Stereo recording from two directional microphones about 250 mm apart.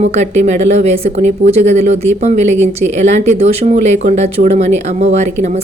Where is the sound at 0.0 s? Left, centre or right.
Right.